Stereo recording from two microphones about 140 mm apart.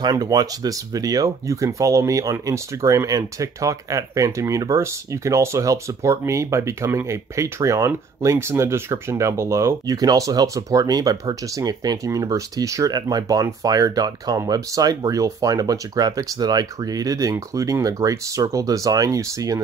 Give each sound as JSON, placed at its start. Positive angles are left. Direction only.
{"t": 0.0, "sound": "speech", "side_deg": -25}